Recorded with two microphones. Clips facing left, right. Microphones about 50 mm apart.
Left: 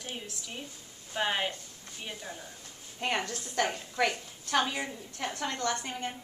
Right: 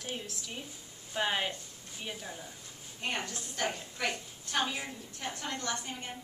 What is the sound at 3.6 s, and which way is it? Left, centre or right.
Speech, left.